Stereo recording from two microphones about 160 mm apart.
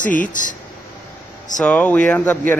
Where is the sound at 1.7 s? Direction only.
10° left (ahead or behind).